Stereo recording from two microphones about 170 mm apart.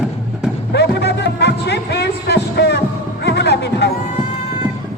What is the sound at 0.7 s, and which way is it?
Music, 75° left (ahead or behind).